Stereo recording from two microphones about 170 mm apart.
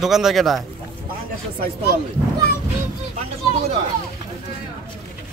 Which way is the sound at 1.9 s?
75° left (ahead or behind).